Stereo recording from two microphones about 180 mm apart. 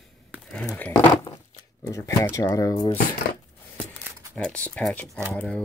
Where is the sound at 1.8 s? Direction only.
15° left (ahead or behind).